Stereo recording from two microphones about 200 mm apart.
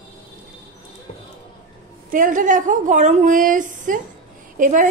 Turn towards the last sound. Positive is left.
turn(degrees=-40)  # may be behind; listen again after turning